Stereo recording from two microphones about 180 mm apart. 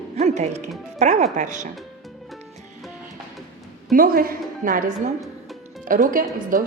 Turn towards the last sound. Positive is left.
turn(degrees=-50)  # may be behind; listen again after turning